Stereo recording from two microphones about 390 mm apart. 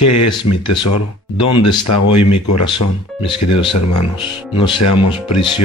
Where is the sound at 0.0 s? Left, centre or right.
Left.